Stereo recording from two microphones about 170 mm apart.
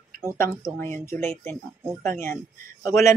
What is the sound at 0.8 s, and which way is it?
Speech, 15° left (ahead or behind).